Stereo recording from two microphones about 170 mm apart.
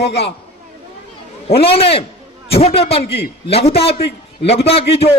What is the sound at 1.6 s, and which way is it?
A man's voice, 35° left (ahead or behind).